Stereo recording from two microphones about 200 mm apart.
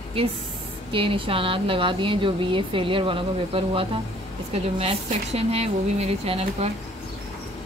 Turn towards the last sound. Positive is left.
turn(degrees=-30)  # may be behind; listen again after turning